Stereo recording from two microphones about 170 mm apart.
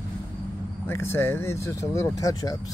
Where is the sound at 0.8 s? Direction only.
15° left (ahead or behind).